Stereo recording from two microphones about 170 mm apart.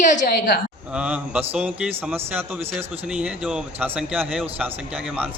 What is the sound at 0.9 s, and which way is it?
A man's voice, 5° right (ahead or behind).